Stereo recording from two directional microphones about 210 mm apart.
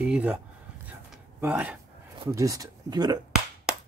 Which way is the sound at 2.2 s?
15° right (ahead or behind).